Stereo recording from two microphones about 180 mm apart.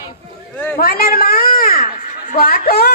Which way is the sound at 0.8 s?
55° left (ahead or behind).